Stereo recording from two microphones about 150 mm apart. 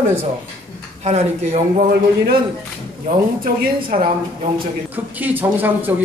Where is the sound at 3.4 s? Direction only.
65° right (ahead or behind).